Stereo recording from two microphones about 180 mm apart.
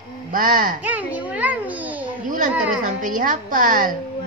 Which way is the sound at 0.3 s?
50° right (ahead or behind).